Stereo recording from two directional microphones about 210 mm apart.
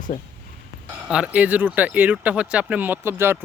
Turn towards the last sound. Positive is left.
turn(degrees=-10)  # may be behind; listen again after turning